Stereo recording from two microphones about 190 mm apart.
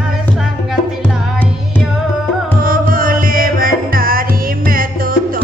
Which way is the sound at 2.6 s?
50° right (ahead or behind).